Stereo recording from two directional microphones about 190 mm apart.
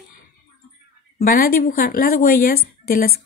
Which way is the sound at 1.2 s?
50° left (ahead or behind).